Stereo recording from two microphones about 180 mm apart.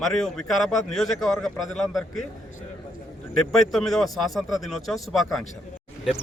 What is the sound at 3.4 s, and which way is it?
Speech, centre (ahead or behind).